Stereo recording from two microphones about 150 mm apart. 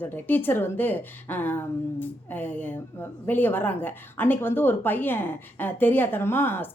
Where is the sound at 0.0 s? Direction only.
15° left (ahead or behind).